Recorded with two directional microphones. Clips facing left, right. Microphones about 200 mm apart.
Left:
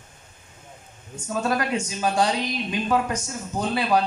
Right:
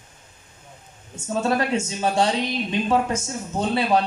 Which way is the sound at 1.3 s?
25° right (ahead or behind).